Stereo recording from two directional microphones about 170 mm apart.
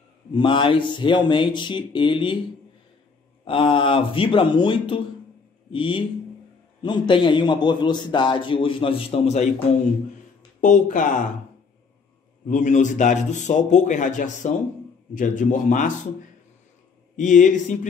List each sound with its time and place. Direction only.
0.3 s a man's voice: 30° left (ahead or behind)
3.4 s a man's voice: 30° left (ahead or behind)
10.6 s a man's voice: 50° left (ahead or behind)
12.4 s a man's voice: 50° left (ahead or behind)
17.2 s a man's voice: 50° left (ahead or behind)